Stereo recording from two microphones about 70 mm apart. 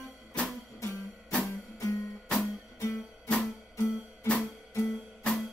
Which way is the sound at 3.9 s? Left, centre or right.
Centre.